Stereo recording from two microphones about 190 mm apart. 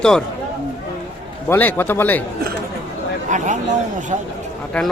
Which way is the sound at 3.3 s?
40° right (ahead or behind).